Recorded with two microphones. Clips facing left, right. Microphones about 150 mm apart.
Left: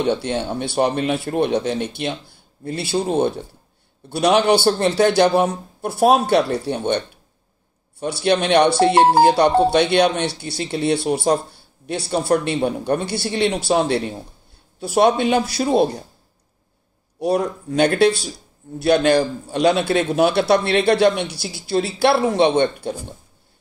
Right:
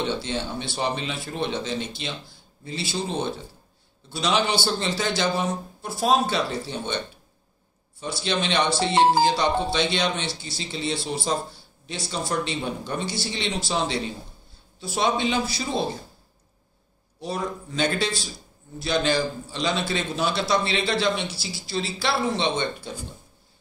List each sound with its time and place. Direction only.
0.1 s a man's voice: 55° left (ahead or behind)
8.0 s a man's voice: 60° left (ahead or behind)
17.2 s a man's voice: 65° left (ahead or behind)